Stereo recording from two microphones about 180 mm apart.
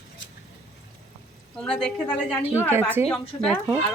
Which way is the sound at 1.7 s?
5° left (ahead or behind).